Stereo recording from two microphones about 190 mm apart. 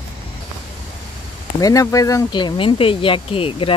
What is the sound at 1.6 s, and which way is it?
Speech, 20° left (ahead or behind).